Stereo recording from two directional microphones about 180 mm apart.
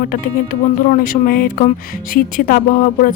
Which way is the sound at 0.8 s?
50° left (ahead or behind).